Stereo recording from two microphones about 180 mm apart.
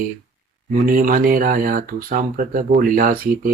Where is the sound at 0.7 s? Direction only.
50° right (ahead or behind).